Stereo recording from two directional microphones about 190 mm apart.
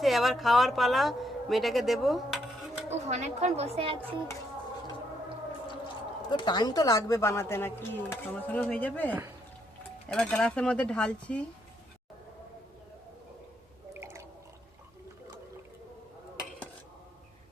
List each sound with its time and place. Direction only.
0.0 s a woman's voice: centre (ahead or behind)
2.9 s a woman's voice: 35° right (ahead or behind)
6.3 s speech: 25° left (ahead or behind); by 11.4 s 5° left (ahead or behind)
14.0 s drip: 15° right (ahead or behind)